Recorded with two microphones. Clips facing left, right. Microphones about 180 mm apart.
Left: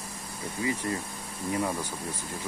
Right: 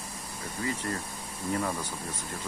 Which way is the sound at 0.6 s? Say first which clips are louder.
Left 3 dB; 15° left (ahead or behind).